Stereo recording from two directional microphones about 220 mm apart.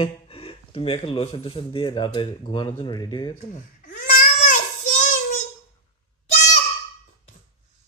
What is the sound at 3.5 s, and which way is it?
Babbling, 35° left (ahead or behind).